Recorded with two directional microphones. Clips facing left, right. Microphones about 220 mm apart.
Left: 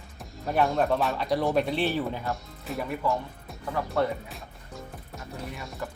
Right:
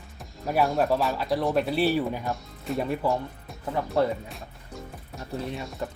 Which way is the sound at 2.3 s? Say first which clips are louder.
Right 4 dB; centre (ahead or behind).